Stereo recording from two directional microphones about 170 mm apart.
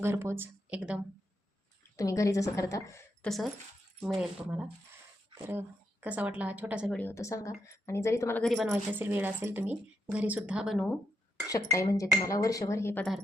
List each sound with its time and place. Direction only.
0.0 s speech: 15° right (ahead or behind)
2.0 s a woman's voice: 20° left (ahead or behind)
3.2 s speech: centre (ahead or behind)
6.9 s speech: 15° left (ahead or behind)
8.4 s speech: 5° right (ahead or behind)
11.7 s a woman's voice: 20° left (ahead or behind)